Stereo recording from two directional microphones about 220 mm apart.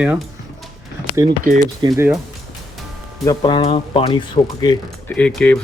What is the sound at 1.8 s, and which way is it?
Speech, 10° right (ahead or behind).